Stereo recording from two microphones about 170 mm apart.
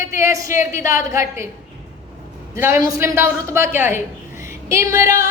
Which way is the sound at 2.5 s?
15° right (ahead or behind).